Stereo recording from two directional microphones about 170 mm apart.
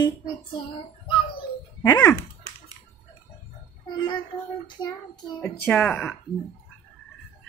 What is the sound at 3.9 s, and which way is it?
A child's voice, 30° left (ahead or behind).